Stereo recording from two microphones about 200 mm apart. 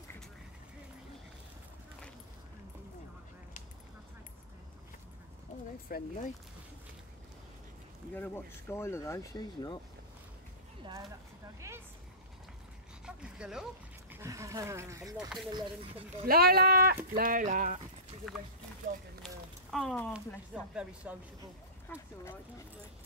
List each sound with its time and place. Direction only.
5.5 s a sound: 40° left (ahead or behind)
5.9 s speech: 40° left (ahead or behind)
8.1 s speech: 10° left (ahead or behind)
10.8 s a sound: 20° right (ahead or behind)
13.0 s a sound: 5° right (ahead or behind)
14.1 s a sound: 15° right (ahead or behind)
15.1 s speech: centre (ahead or behind)
15.5 s speech: 25° right (ahead or behind)
16.3 s speech: 50° right (ahead or behind)
19.7 s speech: 5° left (ahead or behind)
20.5 s speech: 5° right (ahead or behind)
21.8 s speech: 10° left (ahead or behind)